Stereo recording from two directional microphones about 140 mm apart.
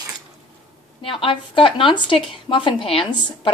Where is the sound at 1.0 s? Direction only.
40° left (ahead or behind).